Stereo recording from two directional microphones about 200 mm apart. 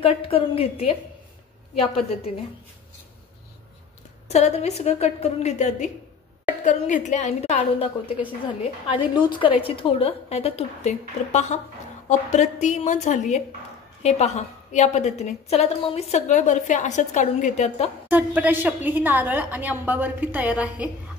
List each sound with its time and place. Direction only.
0.0 s a woman's voice: 30° left (ahead or behind)
4.3 s a woman's voice: 35° left (ahead or behind)
18.0 s a woman's voice: 10° right (ahead or behind)